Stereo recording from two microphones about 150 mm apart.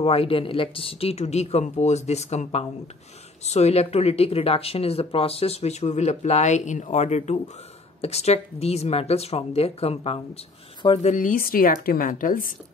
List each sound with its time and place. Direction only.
0.0 s speech: 40° left (ahead or behind)
11.1 s speech: 60° left (ahead or behind)